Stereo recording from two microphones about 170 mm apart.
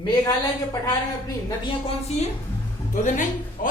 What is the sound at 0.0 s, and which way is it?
Speech, 25° left (ahead or behind).